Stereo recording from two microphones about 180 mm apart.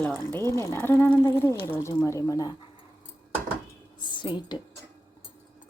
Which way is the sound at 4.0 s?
25° left (ahead or behind).